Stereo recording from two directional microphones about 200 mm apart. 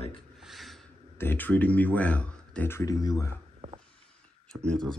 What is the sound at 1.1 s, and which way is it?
Speech, 10° left (ahead or behind).